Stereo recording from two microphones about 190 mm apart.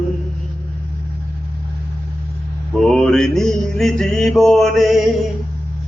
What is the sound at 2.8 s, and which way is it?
Mantra, 5° left (ahead or behind).